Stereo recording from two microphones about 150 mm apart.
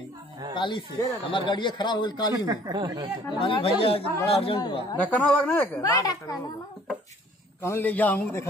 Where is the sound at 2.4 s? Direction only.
25° right (ahead or behind).